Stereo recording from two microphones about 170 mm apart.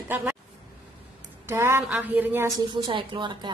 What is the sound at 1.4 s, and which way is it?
Speech, 15° right (ahead or behind).